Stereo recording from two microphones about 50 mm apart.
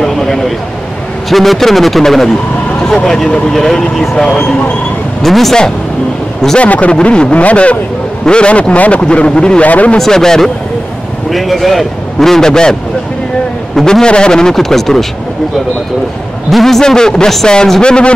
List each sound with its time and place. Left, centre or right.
0.0 s a man's voice: centre
6.6 s speech: left
9.7 s speech: left
9.9 s a man's voice: centre
11.2 s a man's voice: centre
13.7 s a man's voice: centre
16.4 s a man's voice: centre